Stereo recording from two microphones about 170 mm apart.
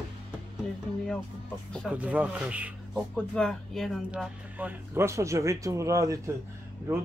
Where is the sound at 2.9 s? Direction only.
5° left (ahead or behind); by 6.3 s 20° right (ahead or behind).